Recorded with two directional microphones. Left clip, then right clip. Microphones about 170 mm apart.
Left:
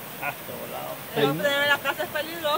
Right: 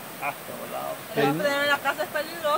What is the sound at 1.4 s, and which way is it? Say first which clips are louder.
Speech: left 1 dB; 40° left (ahead or behind).